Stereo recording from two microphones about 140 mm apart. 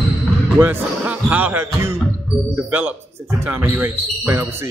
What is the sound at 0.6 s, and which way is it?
A man's voice, 15° right (ahead or behind).